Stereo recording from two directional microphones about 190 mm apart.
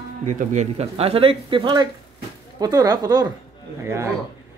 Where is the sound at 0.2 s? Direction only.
40° right (ahead or behind).